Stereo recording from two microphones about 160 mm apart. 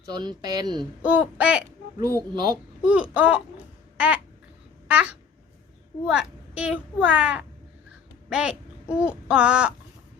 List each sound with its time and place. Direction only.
0.1 s speech: 25° right (ahead or behind)
1.0 s a child's voice: 5° right (ahead or behind)
2.0 s speech: 20° right (ahead or behind)
2.8 s a child's voice: 10° right (ahead or behind)
3.9 s babbling: 10° right (ahead or behind)
4.9 s a child's voice: 10° right (ahead or behind)